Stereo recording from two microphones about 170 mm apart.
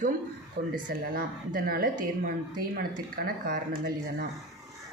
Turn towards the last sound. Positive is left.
turn(degrees=-55)  # may be behind; listen again after turning